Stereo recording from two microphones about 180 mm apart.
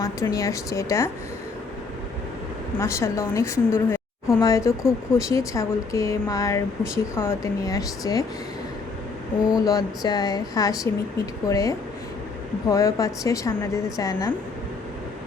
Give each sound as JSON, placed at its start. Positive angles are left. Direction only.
{"t": 0.0, "sound": "speech", "side_deg": 20}
{"t": 2.8, "sound": "speech", "side_deg": 15}
{"t": 4.8, "sound": "speech", "side_deg": -5}
{"t": 5.3, "sound": "speech", "side_deg": 15}
{"t": 9.5, "sound": "a sound", "side_deg": 20}
{"t": 11.4, "sound": "speech", "side_deg": 15}